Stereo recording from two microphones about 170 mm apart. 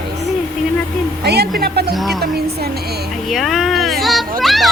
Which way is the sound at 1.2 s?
75° right (ahead or behind).